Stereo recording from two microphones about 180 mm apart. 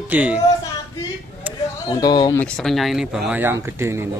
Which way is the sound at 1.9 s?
20° left (ahead or behind).